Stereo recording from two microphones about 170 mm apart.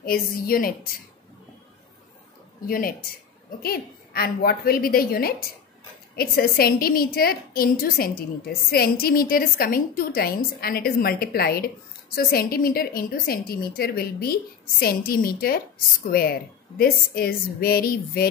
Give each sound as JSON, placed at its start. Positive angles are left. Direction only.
{"t": 0.0, "sound": "a woman's voice", "side_deg": 60}
{"t": 2.6, "sound": "a woman's voice", "side_deg": 55}